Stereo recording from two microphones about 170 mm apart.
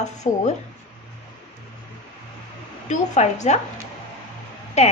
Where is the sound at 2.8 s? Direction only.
45° left (ahead or behind).